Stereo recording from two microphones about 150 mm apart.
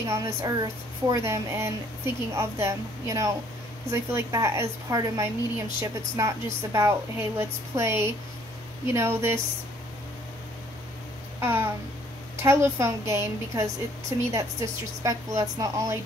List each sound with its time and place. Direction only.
0.0 s a woman's voice: 20° right (ahead or behind)
11.3 s a sound: 15° right (ahead or behind)
12.4 s a woman's voice: 15° right (ahead or behind)